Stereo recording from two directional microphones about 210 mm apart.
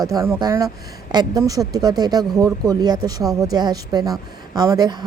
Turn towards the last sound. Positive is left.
turn(degrees=-20)  # may be behind; listen again after turning